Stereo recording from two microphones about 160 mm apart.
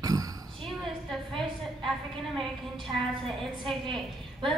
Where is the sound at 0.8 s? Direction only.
Centre (ahead or behind).